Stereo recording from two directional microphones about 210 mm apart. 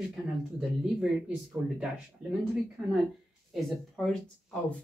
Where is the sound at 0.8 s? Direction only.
Centre (ahead or behind).